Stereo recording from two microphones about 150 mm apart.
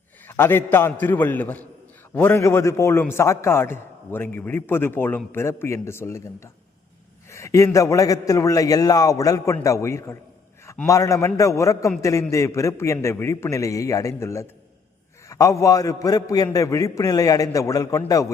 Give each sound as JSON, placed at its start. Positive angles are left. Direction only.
{"t": 0.3, "sound": "a man's voice", "side_deg": 15}